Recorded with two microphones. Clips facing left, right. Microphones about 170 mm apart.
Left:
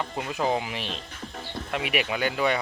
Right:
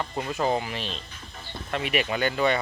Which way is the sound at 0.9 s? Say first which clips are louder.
Left 2 dB; 55° left (ahead or behind).